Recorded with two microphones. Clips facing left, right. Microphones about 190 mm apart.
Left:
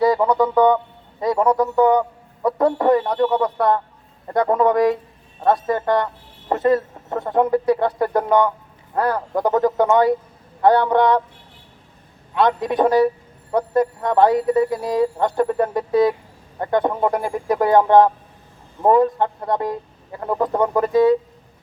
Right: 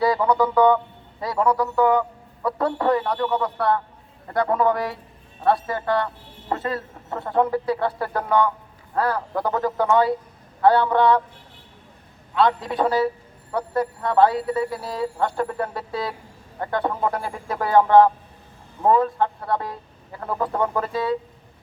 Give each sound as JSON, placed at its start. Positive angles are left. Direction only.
{"t": 0.0, "sound": "music", "side_deg": 20}
{"t": 1.2, "sound": "a sound", "side_deg": 20}
{"t": 4.4, "sound": "speech", "side_deg": 20}
{"t": 12.4, "sound": "speech", "side_deg": 20}